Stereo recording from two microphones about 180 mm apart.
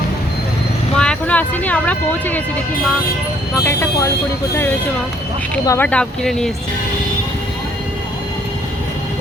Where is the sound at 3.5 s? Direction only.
15° left (ahead or behind).